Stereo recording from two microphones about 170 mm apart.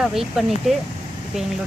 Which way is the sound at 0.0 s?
Centre (ahead or behind).